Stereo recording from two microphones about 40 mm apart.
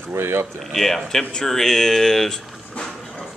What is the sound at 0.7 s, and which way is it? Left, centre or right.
Speech, centre.